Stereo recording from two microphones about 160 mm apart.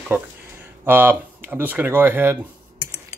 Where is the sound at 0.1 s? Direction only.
10° right (ahead or behind).